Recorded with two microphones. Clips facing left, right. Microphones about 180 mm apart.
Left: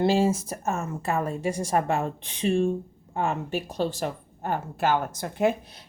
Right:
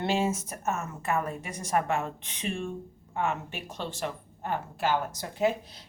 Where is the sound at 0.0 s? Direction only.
35° left (ahead or behind).